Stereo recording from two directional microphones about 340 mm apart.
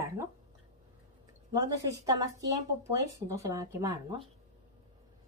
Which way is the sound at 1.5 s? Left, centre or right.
Centre.